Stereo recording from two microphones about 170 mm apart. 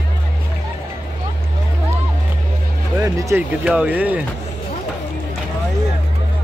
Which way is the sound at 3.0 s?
20° right (ahead or behind).